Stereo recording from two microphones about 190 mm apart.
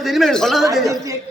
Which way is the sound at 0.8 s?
15° right (ahead or behind).